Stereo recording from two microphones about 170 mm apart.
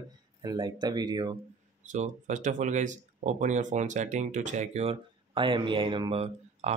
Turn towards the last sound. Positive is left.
turn(degrees=-40)  # may be behind; listen again after turning